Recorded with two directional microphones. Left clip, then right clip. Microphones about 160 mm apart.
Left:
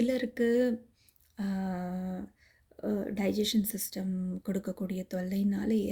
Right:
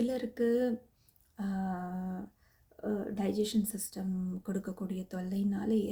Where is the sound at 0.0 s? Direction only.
25° left (ahead or behind).